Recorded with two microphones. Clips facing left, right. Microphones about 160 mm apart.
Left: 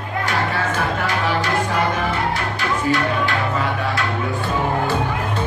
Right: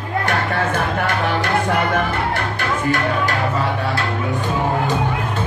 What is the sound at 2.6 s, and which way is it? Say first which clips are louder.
Music: left 1 dB; 50° right (ahead or behind).